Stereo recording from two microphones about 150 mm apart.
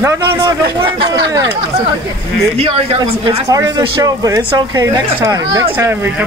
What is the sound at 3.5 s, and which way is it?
A woman's voice, 25° right (ahead or behind).